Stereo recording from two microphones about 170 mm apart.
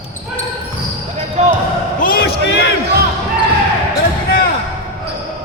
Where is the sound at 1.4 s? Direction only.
40° right (ahead or behind).